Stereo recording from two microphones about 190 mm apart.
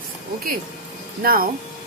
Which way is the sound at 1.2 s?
50° right (ahead or behind).